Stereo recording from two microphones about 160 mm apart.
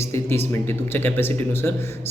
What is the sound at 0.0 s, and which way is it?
A man's voice, 15° left (ahead or behind).